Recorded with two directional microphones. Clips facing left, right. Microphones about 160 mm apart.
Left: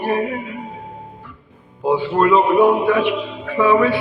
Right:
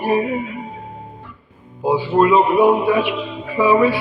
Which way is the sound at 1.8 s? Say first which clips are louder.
Right 1 dB; 5° right (ahead or behind).